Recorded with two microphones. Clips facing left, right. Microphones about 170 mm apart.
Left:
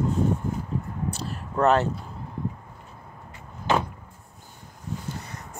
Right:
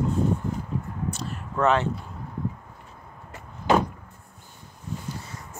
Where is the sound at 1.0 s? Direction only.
35° left (ahead or behind).